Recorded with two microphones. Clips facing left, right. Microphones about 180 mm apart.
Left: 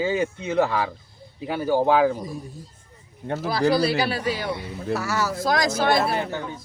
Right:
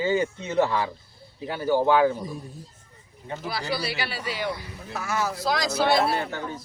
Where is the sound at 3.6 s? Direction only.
50° left (ahead or behind).